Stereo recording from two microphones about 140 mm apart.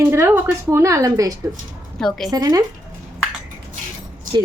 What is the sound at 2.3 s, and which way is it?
Speech, 25° right (ahead or behind).